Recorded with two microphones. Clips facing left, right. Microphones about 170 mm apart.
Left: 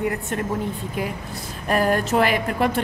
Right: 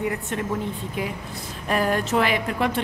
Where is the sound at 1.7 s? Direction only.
45° left (ahead or behind).